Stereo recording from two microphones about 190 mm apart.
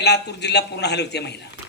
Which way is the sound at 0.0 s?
60° left (ahead or behind).